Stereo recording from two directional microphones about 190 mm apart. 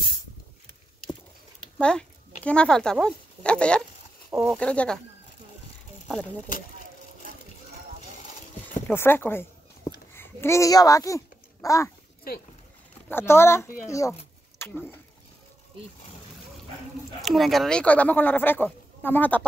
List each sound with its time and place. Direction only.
1.8 s speech: 5° left (ahead or behind)
8.8 s a sound: 10° left (ahead or behind)
10.1 s a child's voice: 10° left (ahead or behind)
13.1 s speech: 15° left (ahead or behind)
17.2 s speech: centre (ahead or behind)